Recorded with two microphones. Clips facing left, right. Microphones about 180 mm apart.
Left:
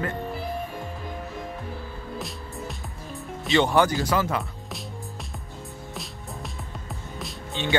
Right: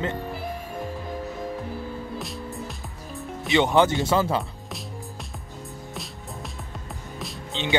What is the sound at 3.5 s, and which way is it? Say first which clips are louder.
Speech: right 1 dB; 20° right (ahead or behind).